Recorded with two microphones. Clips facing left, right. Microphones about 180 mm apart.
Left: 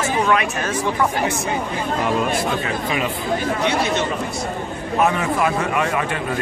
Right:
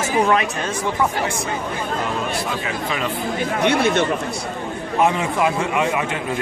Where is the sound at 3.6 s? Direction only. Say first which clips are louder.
Right 3 dB; 55° right (ahead or behind).